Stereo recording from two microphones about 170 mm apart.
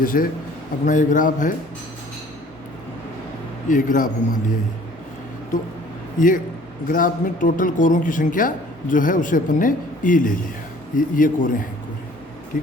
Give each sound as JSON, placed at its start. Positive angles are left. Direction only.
{"t": 0.0, "sound": "a man's voice", "side_deg": 55}
{"t": 3.7, "sound": "a woman's voice", "side_deg": 50}
{"t": 6.1, "sound": "a woman's voice", "side_deg": 50}